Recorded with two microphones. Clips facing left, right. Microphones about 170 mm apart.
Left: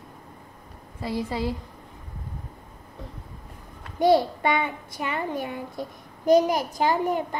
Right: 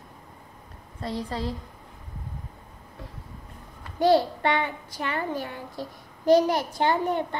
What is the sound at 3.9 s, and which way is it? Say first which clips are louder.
A child's voice: left 1 dB; 15° left (ahead or behind).